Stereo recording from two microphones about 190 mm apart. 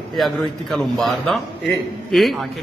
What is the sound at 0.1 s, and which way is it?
A man's voice, centre (ahead or behind).